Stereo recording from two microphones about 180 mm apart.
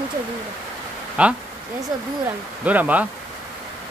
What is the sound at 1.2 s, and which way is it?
Speech, 5° right (ahead or behind).